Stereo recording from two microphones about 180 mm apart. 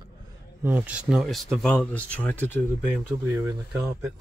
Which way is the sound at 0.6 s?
10° right (ahead or behind).